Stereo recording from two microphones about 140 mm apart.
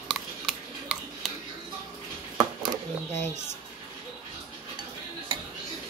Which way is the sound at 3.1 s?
60° right (ahead or behind).